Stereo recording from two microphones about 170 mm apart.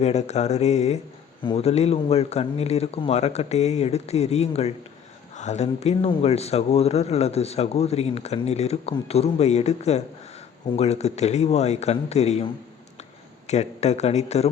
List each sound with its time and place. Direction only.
0.0 s speech: 40° left (ahead or behind)
13.5 s speech: 40° left (ahead or behind)